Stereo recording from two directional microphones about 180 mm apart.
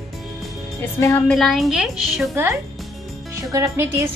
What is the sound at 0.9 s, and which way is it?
A woman's voice, 15° left (ahead or behind).